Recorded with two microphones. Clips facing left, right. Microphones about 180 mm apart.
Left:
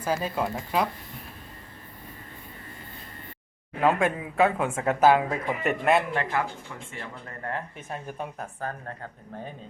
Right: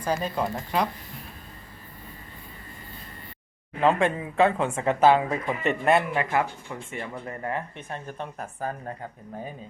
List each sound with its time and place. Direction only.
0.0 s speech: 5° left (ahead or behind)
3.8 s speech: 5° left (ahead or behind)
6.3 s speech: 20° right (ahead or behind)
7.5 s speech: centre (ahead or behind)
8.6 s speech: 10° right (ahead or behind)